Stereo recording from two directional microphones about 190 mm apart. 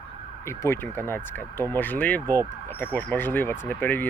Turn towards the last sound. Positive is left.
turn(degrees=10)  # may be behind; listen again after turning